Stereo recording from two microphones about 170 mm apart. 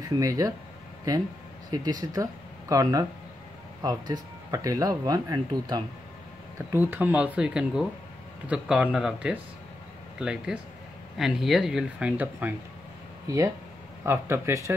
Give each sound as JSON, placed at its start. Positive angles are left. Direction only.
{"t": 0.2, "sound": "speech", "side_deg": -20}
{"t": 1.7, "sound": "speech", "side_deg": -20}
{"t": 6.7, "sound": "speech", "side_deg": -10}
{"t": 14.0, "sound": "speech", "side_deg": -15}